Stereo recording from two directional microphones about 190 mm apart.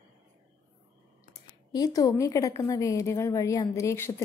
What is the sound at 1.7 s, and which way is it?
A woman's voice, 20° left (ahead or behind).